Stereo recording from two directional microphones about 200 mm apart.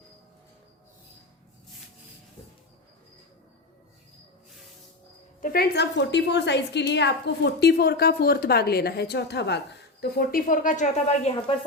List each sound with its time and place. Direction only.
5.4 s a woman's voice: 45° left (ahead or behind)